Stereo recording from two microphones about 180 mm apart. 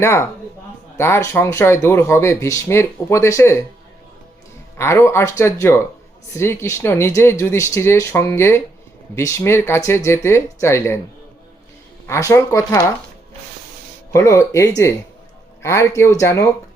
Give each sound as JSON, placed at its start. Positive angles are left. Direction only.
{"t": 0.0, "sound": "speech", "side_deg": 15}
{"t": 4.8, "sound": "speech", "side_deg": 15}
{"t": 12.0, "sound": "speech", "side_deg": 15}
{"t": 14.1, "sound": "speech", "side_deg": 15}